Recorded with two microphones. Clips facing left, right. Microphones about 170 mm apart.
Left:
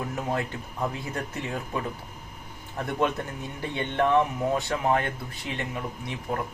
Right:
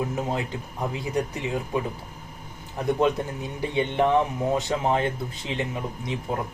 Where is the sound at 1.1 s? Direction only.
15° right (ahead or behind).